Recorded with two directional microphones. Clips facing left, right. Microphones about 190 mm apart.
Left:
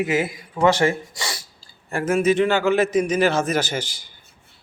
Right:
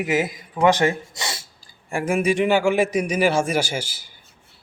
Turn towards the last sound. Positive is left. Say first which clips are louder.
# even
turn(degrees=-10)  # may be behind; listen again after turning